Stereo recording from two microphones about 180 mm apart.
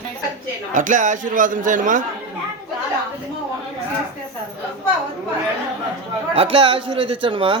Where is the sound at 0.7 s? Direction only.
45° right (ahead or behind).